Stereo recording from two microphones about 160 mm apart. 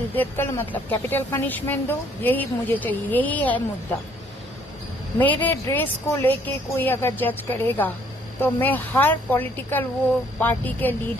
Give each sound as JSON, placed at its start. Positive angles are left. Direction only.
{"t": 0.1, "sound": "a woman's voice", "side_deg": 10}
{"t": 5.2, "sound": "a woman's voice", "side_deg": 10}